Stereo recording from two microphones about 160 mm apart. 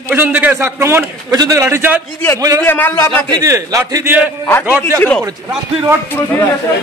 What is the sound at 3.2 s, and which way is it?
A man's voice, 20° right (ahead or behind).